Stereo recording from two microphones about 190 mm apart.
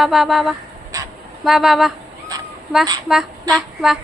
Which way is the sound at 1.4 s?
Centre (ahead or behind).